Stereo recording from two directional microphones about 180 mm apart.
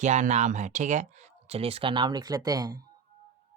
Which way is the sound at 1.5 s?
30° right (ahead or behind).